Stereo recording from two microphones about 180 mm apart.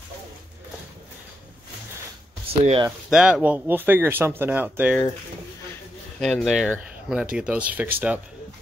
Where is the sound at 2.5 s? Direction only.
35° right (ahead or behind).